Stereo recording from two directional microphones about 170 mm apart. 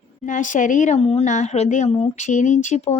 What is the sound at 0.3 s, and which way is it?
A woman's voice, 50° left (ahead or behind).